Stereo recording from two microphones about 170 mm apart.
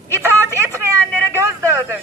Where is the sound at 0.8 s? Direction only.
15° right (ahead or behind).